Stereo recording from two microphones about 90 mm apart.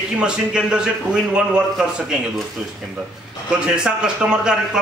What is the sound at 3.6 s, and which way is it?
Speech, 10° right (ahead or behind).